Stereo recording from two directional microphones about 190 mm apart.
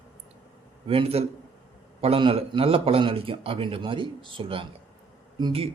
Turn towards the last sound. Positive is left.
turn(degrees=-30)  # may be behind; listen again after turning